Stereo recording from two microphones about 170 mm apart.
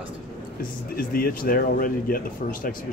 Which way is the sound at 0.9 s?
60° left (ahead or behind).